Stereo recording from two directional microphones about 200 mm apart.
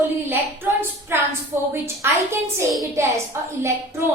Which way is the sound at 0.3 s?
10° right (ahead or behind).